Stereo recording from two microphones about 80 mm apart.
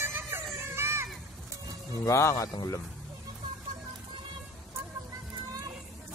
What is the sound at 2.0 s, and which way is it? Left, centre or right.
Speech, left.